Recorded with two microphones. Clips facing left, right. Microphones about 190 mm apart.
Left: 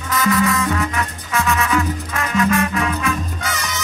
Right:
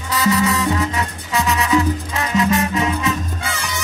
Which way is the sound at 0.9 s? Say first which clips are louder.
Right 1 dB; 15° right (ahead or behind).